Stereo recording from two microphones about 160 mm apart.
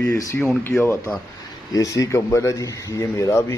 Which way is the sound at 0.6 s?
10° left (ahead or behind).